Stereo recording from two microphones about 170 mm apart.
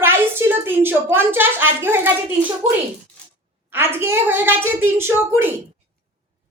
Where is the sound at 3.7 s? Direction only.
15° right (ahead or behind).